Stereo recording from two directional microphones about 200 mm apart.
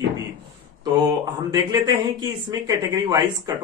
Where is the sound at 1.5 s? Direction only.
20° right (ahead or behind).